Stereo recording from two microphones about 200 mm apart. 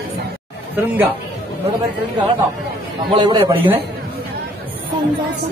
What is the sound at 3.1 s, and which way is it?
Speech, 25° right (ahead or behind).